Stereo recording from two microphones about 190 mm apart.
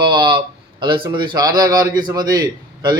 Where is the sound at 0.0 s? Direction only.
25° right (ahead or behind).